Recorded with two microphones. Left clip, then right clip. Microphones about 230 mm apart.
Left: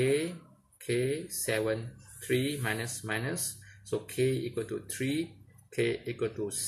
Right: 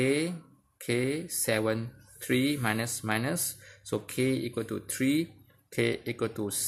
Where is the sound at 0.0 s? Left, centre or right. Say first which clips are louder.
Right 1 dB; right.